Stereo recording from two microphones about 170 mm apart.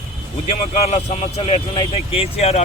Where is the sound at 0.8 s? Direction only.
40° left (ahead or behind).